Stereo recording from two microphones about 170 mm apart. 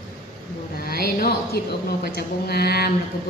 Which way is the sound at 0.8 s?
65° left (ahead or behind).